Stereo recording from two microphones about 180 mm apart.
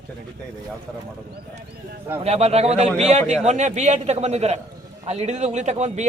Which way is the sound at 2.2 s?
35° right (ahead or behind).